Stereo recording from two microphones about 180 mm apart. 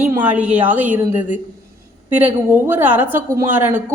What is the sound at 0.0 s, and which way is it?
A woman's voice, 10° right (ahead or behind).